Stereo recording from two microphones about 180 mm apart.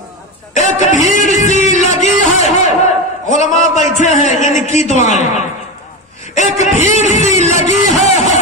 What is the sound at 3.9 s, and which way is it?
Speech, 40° left (ahead or behind).